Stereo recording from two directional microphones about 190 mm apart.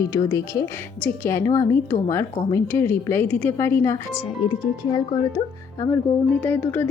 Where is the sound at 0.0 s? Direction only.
15° left (ahead or behind).